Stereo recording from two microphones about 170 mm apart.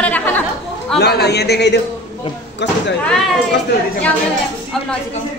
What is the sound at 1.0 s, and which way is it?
Speech, 75° left (ahead or behind).